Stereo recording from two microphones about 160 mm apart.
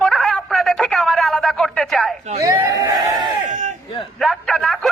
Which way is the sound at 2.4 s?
20° right (ahead or behind).